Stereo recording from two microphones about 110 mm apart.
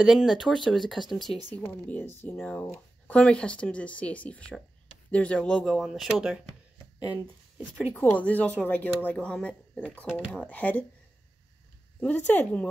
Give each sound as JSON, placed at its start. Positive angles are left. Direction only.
{"t": 0.0, "sound": "speech", "side_deg": -5}
{"t": 1.5, "sound": "speech", "side_deg": 15}
{"t": 7.9, "sound": "speech", "side_deg": 15}
{"t": 12.0, "sound": "speech", "side_deg": 10}